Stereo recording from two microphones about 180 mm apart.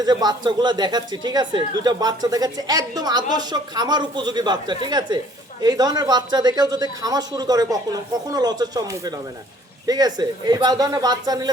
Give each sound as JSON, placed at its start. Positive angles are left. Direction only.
{"t": 0.0, "sound": "speech", "side_deg": -20}